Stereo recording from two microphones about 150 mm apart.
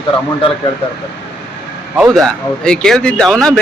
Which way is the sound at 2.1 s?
5° left (ahead or behind).